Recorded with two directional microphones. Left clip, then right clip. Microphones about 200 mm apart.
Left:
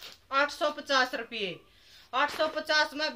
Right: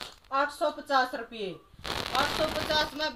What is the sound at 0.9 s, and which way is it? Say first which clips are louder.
Speech: even; 10° left (ahead or behind).